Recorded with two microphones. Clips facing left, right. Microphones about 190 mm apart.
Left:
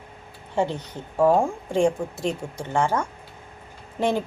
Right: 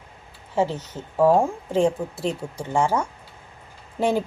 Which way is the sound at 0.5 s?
5° right (ahead or behind).